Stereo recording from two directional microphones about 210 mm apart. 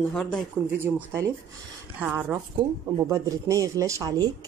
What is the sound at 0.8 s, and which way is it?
Speech, 10° right (ahead or behind).